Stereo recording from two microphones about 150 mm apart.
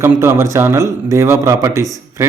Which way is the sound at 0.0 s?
15° right (ahead or behind).